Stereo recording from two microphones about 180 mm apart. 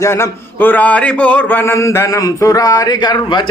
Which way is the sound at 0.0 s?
15° left (ahead or behind).